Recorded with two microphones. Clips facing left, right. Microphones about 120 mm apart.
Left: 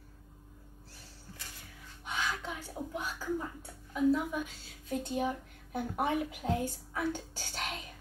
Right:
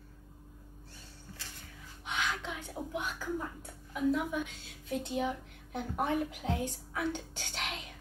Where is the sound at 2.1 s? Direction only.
40° left (ahead or behind).